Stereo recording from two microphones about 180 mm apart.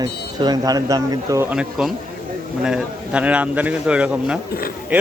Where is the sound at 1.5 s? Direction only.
5° right (ahead or behind).